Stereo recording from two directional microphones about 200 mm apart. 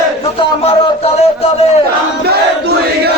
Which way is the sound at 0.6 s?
30° left (ahead or behind).